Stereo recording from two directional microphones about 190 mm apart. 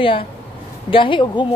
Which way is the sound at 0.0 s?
30° left (ahead or behind).